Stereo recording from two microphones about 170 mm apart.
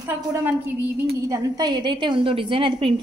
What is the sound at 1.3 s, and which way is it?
A woman's voice, 25° right (ahead or behind).